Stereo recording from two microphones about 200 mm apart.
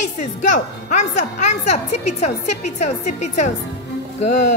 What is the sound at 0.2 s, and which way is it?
A woman's voice, 40° left (ahead or behind).